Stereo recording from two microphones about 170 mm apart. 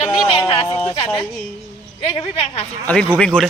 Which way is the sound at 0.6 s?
15° left (ahead or behind).